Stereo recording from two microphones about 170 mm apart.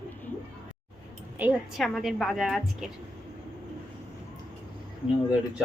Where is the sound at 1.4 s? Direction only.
10° right (ahead or behind).